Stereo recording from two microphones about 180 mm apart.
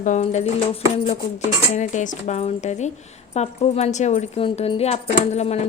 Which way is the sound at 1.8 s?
40° left (ahead or behind).